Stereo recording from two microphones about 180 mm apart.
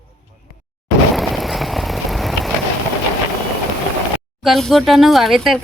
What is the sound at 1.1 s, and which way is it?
Vehicle, centre (ahead or behind).